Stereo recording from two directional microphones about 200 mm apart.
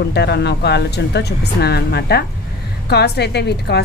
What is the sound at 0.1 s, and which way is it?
A woman's voice, 55° left (ahead or behind).